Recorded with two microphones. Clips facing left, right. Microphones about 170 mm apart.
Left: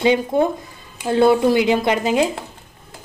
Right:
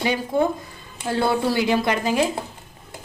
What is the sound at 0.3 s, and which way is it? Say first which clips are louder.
Speech: left 3 dB; 20° left (ahead or behind).